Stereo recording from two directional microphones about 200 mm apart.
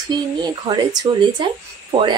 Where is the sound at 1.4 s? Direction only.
25° right (ahead or behind).